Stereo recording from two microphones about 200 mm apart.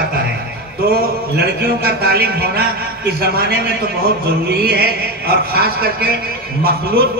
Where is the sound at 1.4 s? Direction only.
50° right (ahead or behind).